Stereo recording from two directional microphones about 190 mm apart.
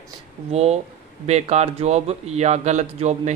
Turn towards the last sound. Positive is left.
turn(degrees=-35)  # may be behind; listen again after turning